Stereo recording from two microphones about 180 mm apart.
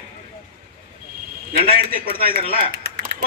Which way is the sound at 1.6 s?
30° left (ahead or behind).